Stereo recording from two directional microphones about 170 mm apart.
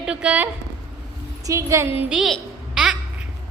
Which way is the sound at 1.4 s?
20° right (ahead or behind).